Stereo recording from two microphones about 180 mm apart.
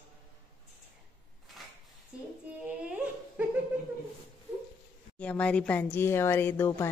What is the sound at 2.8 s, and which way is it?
Dog, 10° right (ahead or behind).